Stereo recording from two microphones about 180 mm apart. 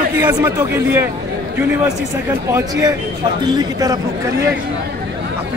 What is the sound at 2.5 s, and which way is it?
Speech, 15° right (ahead or behind).